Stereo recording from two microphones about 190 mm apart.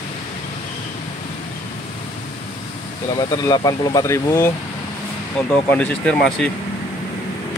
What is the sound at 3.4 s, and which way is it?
Speech, 20° left (ahead or behind).